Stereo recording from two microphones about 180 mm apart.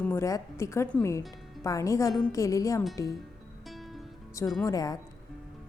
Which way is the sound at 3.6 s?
Centre (ahead or behind).